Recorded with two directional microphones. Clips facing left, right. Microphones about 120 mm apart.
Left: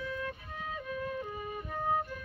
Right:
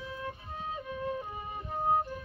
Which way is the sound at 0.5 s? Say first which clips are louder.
Even; 30° right (ahead or behind).